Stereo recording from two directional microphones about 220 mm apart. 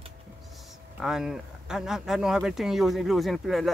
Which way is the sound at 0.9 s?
5° right (ahead or behind).